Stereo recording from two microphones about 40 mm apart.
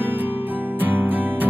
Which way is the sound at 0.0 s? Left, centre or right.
Right.